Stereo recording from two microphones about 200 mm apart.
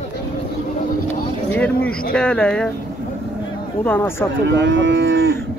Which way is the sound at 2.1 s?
5° left (ahead or behind).